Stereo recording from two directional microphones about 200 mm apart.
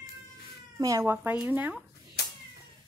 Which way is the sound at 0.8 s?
15° right (ahead or behind).